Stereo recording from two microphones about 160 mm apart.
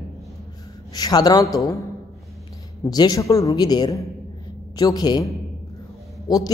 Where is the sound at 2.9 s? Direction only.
25° left (ahead or behind).